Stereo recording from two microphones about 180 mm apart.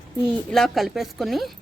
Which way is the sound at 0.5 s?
Centre (ahead or behind).